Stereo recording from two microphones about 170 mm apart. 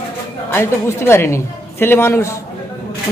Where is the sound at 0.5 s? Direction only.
15° left (ahead or behind).